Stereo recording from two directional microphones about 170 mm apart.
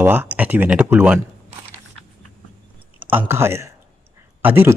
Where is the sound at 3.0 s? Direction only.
10° right (ahead or behind).